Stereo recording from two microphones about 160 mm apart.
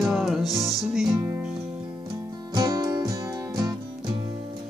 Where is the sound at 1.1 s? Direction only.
15° right (ahead or behind).